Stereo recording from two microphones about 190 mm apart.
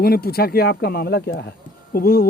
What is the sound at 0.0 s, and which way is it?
A man's voice, 55° left (ahead or behind).